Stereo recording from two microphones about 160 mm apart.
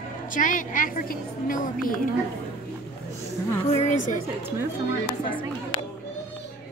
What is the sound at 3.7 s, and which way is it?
Speech, 50° left (ahead or behind).